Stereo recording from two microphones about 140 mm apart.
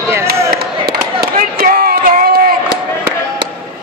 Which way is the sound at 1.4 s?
90° right.